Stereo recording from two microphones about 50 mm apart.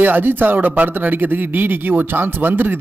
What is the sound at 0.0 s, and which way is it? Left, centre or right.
Speech, right.